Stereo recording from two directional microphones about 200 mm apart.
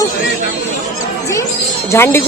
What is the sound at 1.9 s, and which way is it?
Speech, 10° left (ahead or behind).